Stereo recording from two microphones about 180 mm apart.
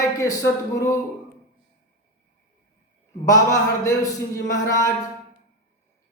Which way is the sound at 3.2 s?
20° left (ahead or behind).